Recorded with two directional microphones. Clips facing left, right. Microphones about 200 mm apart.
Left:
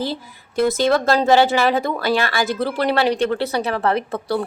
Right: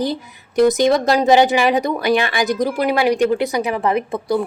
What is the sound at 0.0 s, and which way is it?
A woman's voice, 15° right (ahead or behind).